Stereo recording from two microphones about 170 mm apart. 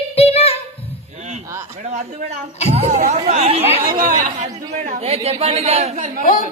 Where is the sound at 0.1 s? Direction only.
35° left (ahead or behind).